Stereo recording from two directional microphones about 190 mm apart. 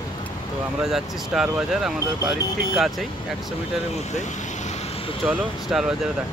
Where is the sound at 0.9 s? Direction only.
Centre (ahead or behind).